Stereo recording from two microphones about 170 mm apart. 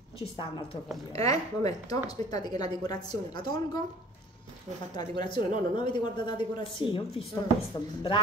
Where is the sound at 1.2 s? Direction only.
20° left (ahead or behind).